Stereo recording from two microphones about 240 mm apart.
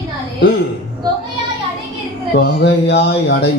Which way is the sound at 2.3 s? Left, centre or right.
Left.